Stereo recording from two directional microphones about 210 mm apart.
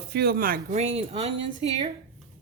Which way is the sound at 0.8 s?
30° right (ahead or behind).